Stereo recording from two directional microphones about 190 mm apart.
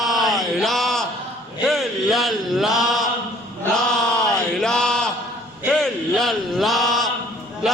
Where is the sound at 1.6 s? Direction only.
Centre (ahead or behind).